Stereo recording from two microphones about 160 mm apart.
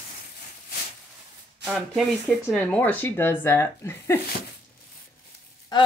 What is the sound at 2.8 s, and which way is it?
Speech, 10° left (ahead or behind).